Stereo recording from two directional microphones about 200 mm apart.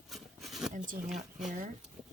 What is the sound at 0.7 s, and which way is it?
Speech, 40° right (ahead or behind).